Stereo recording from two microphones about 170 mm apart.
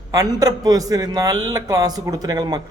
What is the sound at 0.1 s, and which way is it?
Speech, 20° right (ahead or behind).